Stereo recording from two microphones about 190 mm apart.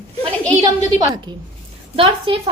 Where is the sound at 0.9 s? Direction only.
20° right (ahead or behind).